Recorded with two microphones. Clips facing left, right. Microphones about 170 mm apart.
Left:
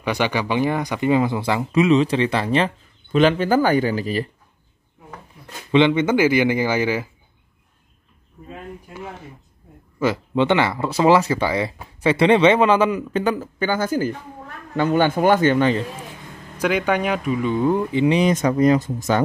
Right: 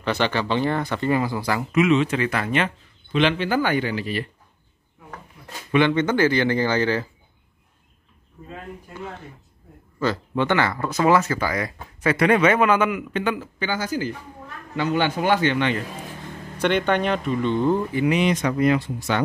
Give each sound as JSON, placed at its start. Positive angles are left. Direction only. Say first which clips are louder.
{"t": 0.0, "sound": "speech", "louder": "left 1 dB", "side_deg": 10}
{"t": 5.7, "sound": "speech", "louder": "left 3 dB", "side_deg": 20}
{"t": 10.0, "sound": "a man's voice", "louder": "left 4 dB", "side_deg": 20}
{"t": 16.6, "sound": "speech", "louder": "left 1 dB", "side_deg": 5}
{"t": 17.9, "sound": "speech", "louder": "left 3 dB", "side_deg": 25}
{"t": 18.2, "sound": "a man's voice", "louder": "left 3 dB", "side_deg": 40}